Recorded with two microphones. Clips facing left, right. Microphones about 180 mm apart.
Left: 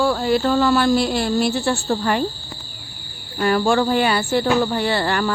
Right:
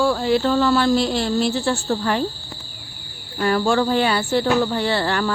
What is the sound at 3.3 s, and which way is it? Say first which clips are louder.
Speech: left 1 dB; 15° left (ahead or behind).